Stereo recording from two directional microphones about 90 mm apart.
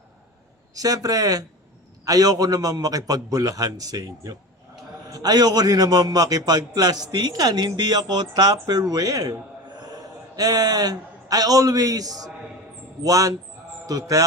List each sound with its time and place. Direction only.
0.7 s a man's voice: 45° right (ahead or behind)
13.0 s music: 40° right (ahead or behind)